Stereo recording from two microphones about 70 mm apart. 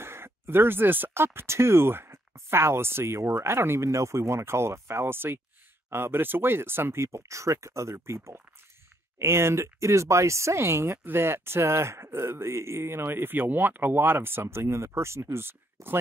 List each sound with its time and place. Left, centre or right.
0.0 s speech: right